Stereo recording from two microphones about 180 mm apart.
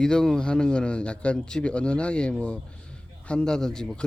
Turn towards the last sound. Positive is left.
turn(degrees=5)  # may be behind; listen again after turning